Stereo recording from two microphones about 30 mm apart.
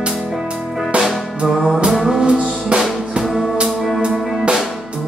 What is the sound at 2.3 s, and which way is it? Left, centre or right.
Music, right.